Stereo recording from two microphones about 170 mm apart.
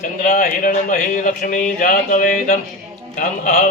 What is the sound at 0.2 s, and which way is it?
Speech, 55° left (ahead or behind).